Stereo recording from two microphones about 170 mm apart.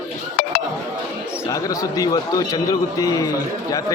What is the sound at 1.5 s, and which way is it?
A man's voice, 20° left (ahead or behind).